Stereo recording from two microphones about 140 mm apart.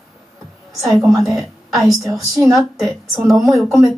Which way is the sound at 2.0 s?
20° right (ahead or behind).